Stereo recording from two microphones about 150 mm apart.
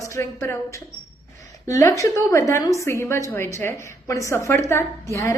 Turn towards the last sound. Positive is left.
turn(degrees=20)  # may be behind; listen again after turning